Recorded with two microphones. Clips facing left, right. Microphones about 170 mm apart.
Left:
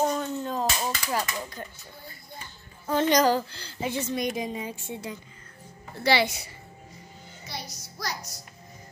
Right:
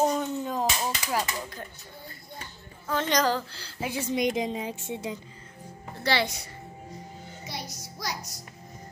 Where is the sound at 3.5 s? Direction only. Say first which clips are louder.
Left 2 dB; 5° right (ahead or behind); by 5.1 s 20° right (ahead or behind).